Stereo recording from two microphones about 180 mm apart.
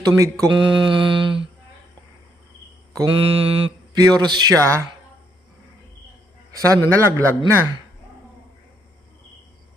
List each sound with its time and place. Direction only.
0.0 s speech: 20° right (ahead or behind)
3.0 s speech: 30° right (ahead or behind)
6.6 s a man's voice: 20° right (ahead or behind)